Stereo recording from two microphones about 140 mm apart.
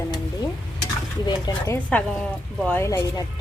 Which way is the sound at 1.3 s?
25° left (ahead or behind).